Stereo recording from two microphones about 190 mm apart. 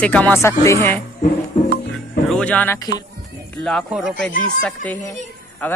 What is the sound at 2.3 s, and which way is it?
Speech, 5° left (ahead or behind).